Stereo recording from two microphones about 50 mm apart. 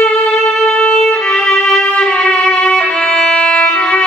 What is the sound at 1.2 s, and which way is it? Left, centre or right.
Violin, centre.